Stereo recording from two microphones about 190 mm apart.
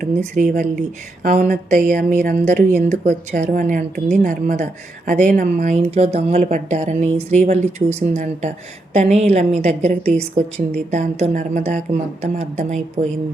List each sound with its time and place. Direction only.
0.0 s a woman's voice: 40° right (ahead or behind)